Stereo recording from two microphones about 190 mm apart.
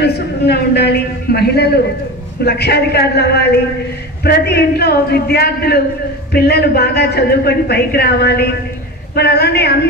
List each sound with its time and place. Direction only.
0.0 s speech: 60° left (ahead or behind)